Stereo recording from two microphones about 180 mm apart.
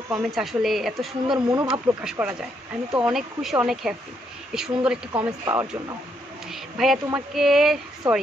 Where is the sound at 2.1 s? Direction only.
5° right (ahead or behind).